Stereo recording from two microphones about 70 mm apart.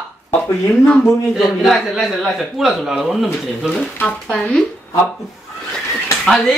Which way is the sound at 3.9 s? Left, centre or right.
Left.